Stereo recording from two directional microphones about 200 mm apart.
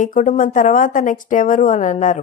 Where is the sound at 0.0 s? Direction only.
40° left (ahead or behind).